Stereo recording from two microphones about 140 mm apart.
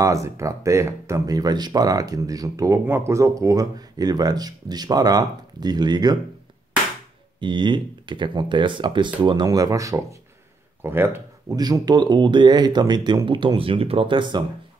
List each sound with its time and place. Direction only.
0.0 s speech: 20° right (ahead or behind)
7.3 s speech: 35° right (ahead or behind); by 11.5 s 15° right (ahead or behind)
11.5 s speech: 30° right (ahead or behind)